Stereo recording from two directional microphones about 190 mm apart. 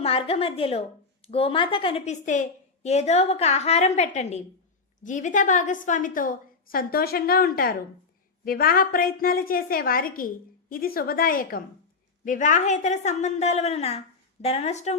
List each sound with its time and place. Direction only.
0.0 s a woman's voice: 30° left (ahead or behind)